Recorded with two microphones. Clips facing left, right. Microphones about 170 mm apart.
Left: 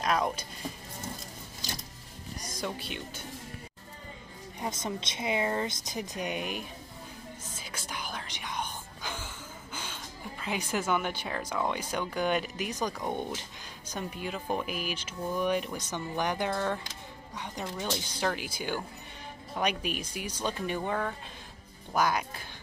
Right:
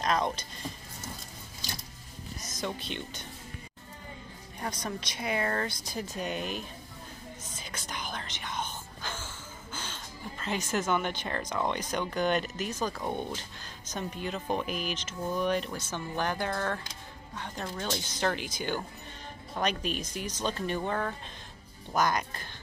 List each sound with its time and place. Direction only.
0.0 s speech: 10° left (ahead or behind)
2.4 s speech: 10° left (ahead or behind)
4.6 s speech: 20° left (ahead or behind)
7.5 s music: 5° left (ahead or behind)
10.4 s speech: 10° left (ahead or behind)